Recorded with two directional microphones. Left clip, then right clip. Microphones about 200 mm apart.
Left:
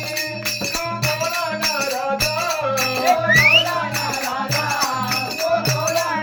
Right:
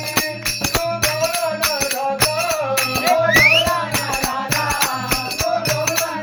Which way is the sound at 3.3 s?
15° right (ahead or behind).